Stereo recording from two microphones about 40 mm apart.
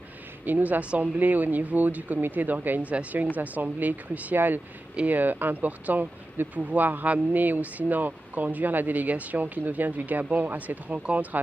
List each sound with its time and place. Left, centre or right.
0.5 s speech: right
0.8 s speech: right
1.2 s speech: right
2.9 s speech: right
3.3 s speech: right
11.0 s speech: right